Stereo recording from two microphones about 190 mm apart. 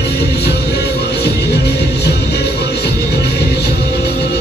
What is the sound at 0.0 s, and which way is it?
Music, 60° left (ahead or behind).